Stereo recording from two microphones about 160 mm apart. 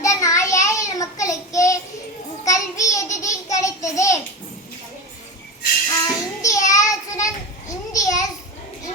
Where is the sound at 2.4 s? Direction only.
20° left (ahead or behind).